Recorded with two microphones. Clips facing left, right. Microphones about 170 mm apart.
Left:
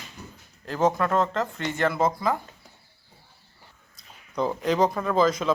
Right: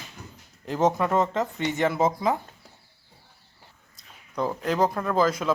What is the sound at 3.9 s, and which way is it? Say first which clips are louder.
Speech: left 2 dB; centre (ahead or behind).